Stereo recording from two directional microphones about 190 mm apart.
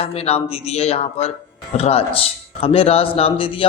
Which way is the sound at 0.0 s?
30° left (ahead or behind).